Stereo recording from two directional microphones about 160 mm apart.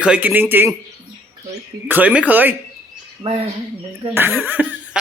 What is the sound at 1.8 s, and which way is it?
Speech, 10° right (ahead or behind).